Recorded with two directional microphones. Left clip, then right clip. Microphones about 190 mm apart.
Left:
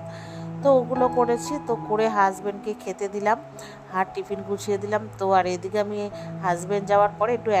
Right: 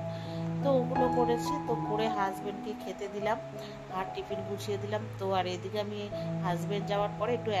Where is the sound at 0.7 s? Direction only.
40° left (ahead or behind).